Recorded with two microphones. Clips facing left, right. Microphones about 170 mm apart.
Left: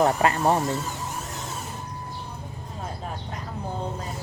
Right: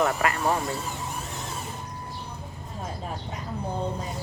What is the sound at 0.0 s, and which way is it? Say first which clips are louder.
Speech: left 4 dB; 30° left (ahead or behind).